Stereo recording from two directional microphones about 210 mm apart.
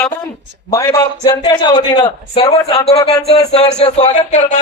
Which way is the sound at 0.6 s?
15° left (ahead or behind).